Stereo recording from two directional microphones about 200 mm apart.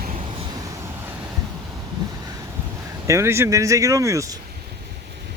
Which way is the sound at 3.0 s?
15° right (ahead or behind).